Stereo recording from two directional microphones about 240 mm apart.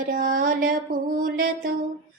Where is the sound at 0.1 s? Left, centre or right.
Right.